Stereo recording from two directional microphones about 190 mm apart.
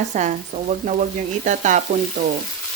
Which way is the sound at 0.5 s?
50° right (ahead or behind).